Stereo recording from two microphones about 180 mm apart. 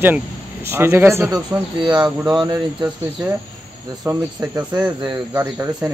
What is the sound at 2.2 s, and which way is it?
Speech, 20° right (ahead or behind).